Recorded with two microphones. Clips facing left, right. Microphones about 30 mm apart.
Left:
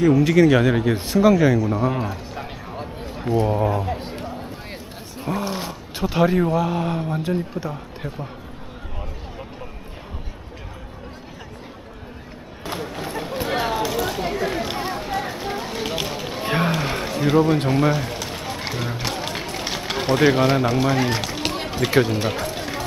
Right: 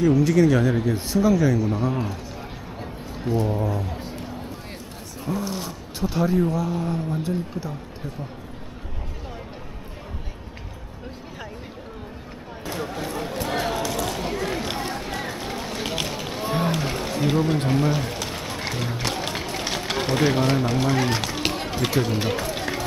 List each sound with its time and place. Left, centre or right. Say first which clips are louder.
0.0 s speech: left 3 dB; left
1.7 s a sound: left 3 dB; centre
3.3 s speech: left 4 dB; left
5.2 s speech: left 3 dB; left
6.7 s speech: left 3 dB; left
7.1 s speech: left 3 dB; left
12.8 s a sound: right 2 dB; centre
17.1 s speech: left 5 dB; centre
17.6 s run: left 3 dB; centre